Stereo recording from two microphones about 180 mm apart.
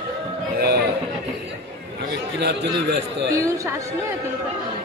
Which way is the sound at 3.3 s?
15° right (ahead or behind).